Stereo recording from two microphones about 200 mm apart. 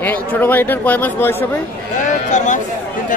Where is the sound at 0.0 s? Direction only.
10° left (ahead or behind).